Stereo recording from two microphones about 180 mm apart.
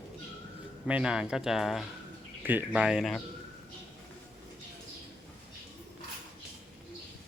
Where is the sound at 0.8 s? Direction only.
5° right (ahead or behind).